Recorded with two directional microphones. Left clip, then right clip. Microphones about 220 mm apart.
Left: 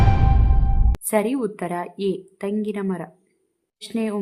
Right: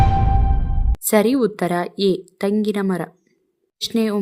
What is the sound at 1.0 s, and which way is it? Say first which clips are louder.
A woman's voice: right 5 dB; 20° right (ahead or behind).